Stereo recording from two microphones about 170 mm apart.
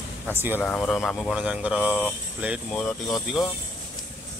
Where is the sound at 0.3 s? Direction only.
10° right (ahead or behind).